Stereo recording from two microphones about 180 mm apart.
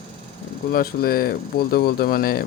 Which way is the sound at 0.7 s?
55° left (ahead or behind).